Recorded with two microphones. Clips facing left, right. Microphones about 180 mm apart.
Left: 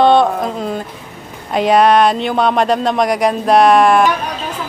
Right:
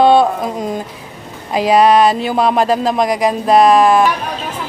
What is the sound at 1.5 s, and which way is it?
Speech, centre (ahead or behind).